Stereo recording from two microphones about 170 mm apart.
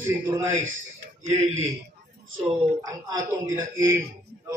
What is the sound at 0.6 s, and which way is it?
Speech, 45° right (ahead or behind).